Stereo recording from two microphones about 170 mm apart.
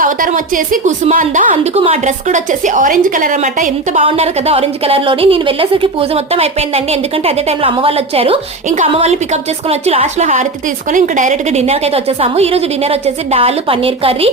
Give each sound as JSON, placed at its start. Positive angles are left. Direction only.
{"t": 0.0, "sound": "a woman's voice", "side_deg": -55}